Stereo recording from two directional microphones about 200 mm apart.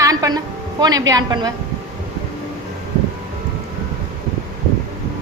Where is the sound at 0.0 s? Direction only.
15° right (ahead or behind).